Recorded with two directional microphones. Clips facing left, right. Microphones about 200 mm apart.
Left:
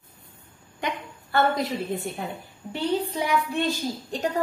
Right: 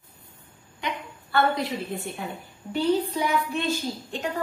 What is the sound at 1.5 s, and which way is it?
Speech, 40° left (ahead or behind).